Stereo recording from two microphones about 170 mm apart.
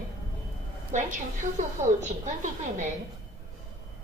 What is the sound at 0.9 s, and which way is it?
A woman's voice, 45° right (ahead or behind).